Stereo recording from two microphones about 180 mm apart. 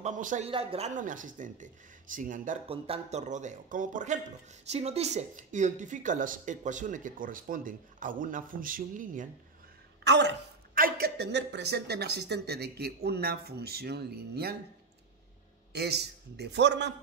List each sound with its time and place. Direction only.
0.0 s speech: 45° right (ahead or behind)
0.5 s speech: 30° right (ahead or behind); by 2.6 s 45° right (ahead or behind)
2.7 s speech: 35° right (ahead or behind)
10.0 s speech: 75° right (ahead or behind)
10.7 s speech: 55° right (ahead or behind)
15.7 s a man's voice: 65° right (ahead or behind)